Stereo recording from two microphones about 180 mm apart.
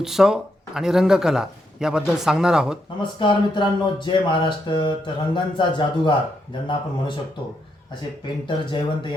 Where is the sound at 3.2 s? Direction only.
25° left (ahead or behind).